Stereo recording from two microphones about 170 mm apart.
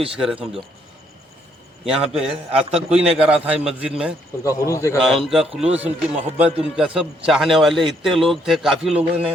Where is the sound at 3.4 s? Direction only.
10° right (ahead or behind).